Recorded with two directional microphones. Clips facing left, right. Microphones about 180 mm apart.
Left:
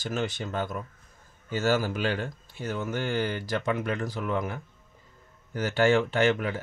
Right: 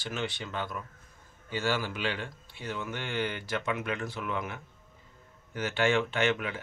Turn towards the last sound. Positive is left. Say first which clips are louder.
# left 5 dB
turn(degrees=40)  # may be behind; listen again after turning